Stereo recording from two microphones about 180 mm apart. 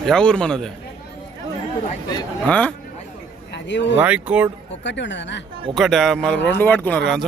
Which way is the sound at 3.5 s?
75° left (ahead or behind).